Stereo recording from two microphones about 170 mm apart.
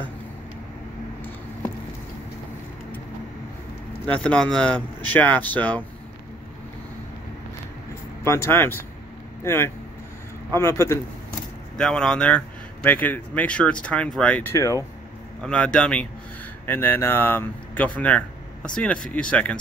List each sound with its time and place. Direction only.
4.0 s a man's voice: 5° left (ahead or behind)
8.2 s a man's voice: 15° left (ahead or behind)
11.7 s a man's voice: 5° left (ahead or behind)
15.4 s a man's voice: 5° left (ahead or behind)